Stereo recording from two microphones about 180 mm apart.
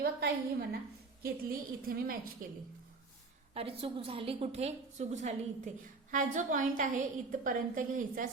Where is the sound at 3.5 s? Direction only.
35° right (ahead or behind).